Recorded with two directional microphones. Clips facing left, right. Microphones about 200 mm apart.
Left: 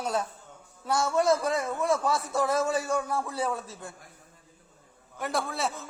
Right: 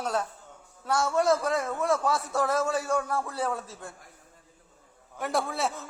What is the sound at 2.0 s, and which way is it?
A man's voice, 5° right (ahead or behind).